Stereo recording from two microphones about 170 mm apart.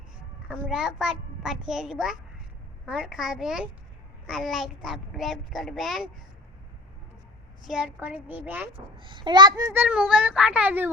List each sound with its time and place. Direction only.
0.7 s a child's voice: 5° right (ahead or behind)
7.6 s speech: 5° right (ahead or behind)
8.7 s a child's voice: 30° right (ahead or behind)
9.7 s speech: 10° right (ahead or behind)